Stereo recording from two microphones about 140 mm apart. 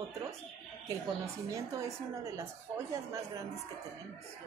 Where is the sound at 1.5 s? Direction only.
25° right (ahead or behind).